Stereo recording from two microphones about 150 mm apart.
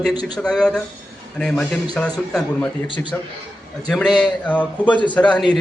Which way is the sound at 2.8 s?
35° left (ahead or behind).